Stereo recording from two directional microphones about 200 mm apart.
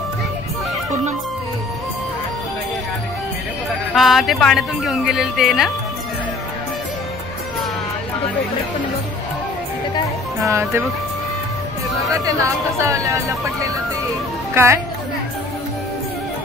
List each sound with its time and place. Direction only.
3.9 s a woman's voice: centre (ahead or behind)
10.4 s speech: 15° right (ahead or behind)
12.1 s a woman's voice: 15° right (ahead or behind)